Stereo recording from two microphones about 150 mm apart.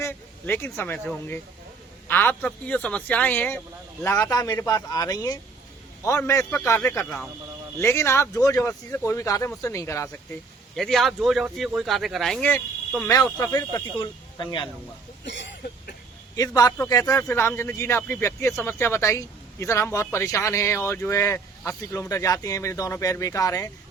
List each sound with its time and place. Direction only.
0.0 s a man's voice: 15° left (ahead or behind)
4.3 s a man's voice: 25° left (ahead or behind)
10.8 s speech: centre (ahead or behind)
13.4 s speech: 20° left (ahead or behind)
14.0 s speech: 35° left (ahead or behind)
16.6 s speech: 25° left (ahead or behind)